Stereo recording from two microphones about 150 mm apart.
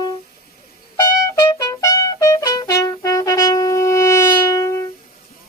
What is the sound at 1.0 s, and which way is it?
Trumpet, 20° left (ahead or behind).